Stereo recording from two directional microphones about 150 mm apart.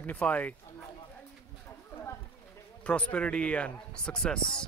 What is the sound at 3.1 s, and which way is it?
Speech, 5° left (ahead or behind).